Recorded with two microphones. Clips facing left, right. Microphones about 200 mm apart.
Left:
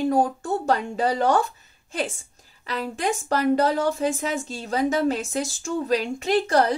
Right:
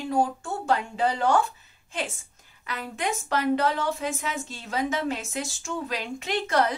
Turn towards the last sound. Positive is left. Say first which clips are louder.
# left 5 dB
turn(degrees=35)  # may be behind; listen again after turning